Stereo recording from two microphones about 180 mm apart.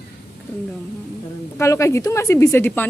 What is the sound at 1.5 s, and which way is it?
Speech, 15° left (ahead or behind).